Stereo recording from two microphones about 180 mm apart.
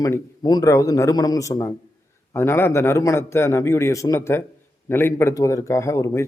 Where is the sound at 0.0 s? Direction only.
20° left (ahead or behind).